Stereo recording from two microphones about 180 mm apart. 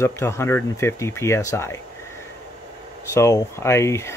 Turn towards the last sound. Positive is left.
turn(degrees=15)  # may be behind; listen again after turning